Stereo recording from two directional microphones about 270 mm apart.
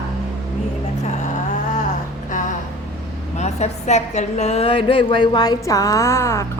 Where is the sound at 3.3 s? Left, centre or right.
Left.